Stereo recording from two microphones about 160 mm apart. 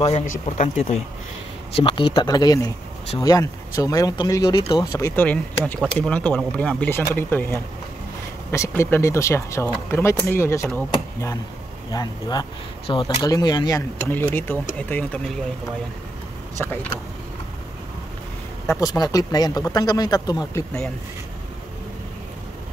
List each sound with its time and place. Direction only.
0.0 s speech: 45° left (ahead or behind); by 5.2 s 20° left (ahead or behind)
5.2 s speech: 10° left (ahead or behind)
11.9 s speech: 25° left (ahead or behind); by 15.3 s 10° left (ahead or behind)
16.5 s speech: 15° left (ahead or behind)
18.7 s speech: 25° left (ahead or behind)